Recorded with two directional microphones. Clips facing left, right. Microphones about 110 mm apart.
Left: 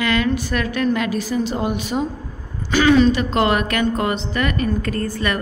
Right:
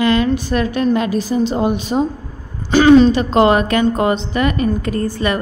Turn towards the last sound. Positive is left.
turn(degrees=-20)  # may be behind; listen again after turning